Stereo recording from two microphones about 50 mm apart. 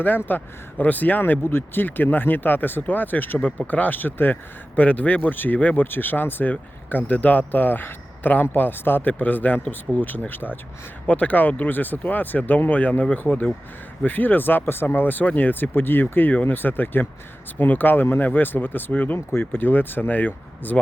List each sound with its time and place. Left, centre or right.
0.3 s speech: left
1.2 s speech: left
4.7 s speech: left
6.5 s speech: left
13.2 s speech: left
19.3 s speech: left